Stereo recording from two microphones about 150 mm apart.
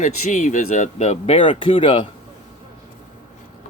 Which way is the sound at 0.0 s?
60° left (ahead or behind).